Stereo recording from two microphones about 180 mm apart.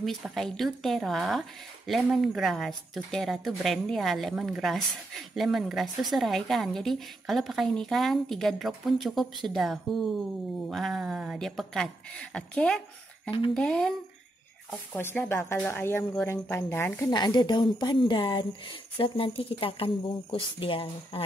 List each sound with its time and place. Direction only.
0.0 s a woman's voice: centre (ahead or behind)
15.0 s speech: 15° left (ahead or behind)
17.1 s speech: 25° left (ahead or behind)